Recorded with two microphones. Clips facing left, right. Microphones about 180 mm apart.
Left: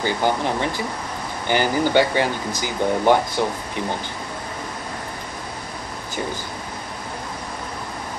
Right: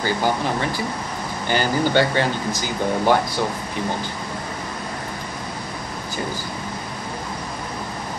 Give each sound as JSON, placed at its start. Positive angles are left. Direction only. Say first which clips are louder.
{"t": 0.0, "sound": "speech", "louder": "even", "side_deg": 20}